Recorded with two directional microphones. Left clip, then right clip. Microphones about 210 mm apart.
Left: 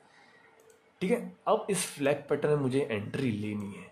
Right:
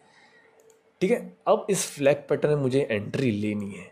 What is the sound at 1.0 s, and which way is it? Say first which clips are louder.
Speech: right 6 dB; 20° right (ahead or behind).